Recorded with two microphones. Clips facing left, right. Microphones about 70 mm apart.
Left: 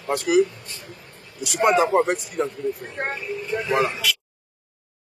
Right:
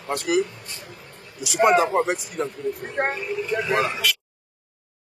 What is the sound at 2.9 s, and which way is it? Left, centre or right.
Speech, right.